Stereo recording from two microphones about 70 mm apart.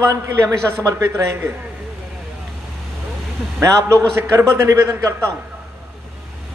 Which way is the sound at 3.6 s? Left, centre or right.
Right.